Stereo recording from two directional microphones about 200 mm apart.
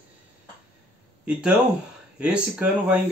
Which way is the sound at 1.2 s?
5° right (ahead or behind).